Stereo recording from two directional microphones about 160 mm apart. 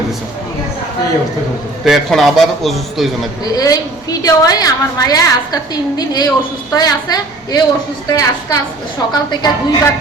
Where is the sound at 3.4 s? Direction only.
20° left (ahead or behind).